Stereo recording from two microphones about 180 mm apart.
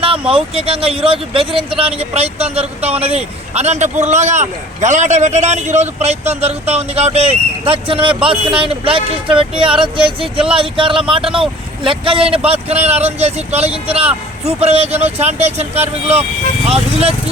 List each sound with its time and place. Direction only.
0.0 s speech: 30° right (ahead or behind)